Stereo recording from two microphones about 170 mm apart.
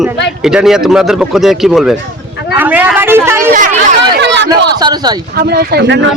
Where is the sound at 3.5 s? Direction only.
50° right (ahead or behind).